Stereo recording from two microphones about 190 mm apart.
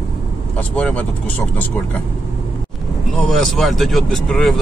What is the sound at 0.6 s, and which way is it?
Speech, 5° left (ahead or behind).